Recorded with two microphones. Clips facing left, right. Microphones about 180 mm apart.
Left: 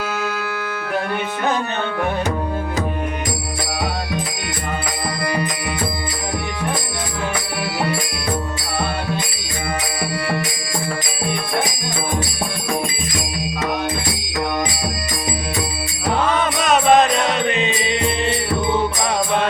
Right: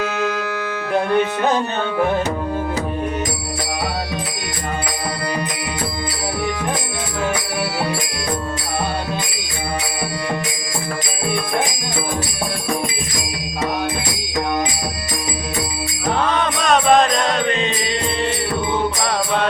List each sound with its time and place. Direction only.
16.4 s music: 5° left (ahead or behind)